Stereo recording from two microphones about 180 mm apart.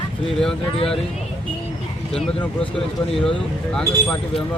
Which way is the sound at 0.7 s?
30° left (ahead or behind).